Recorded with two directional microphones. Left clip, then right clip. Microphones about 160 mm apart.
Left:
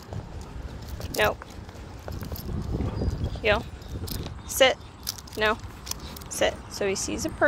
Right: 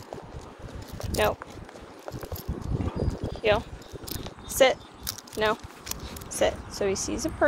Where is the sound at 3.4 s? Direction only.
25° right (ahead or behind).